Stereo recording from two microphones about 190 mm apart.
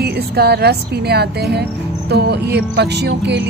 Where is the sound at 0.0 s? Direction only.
55° right (ahead or behind).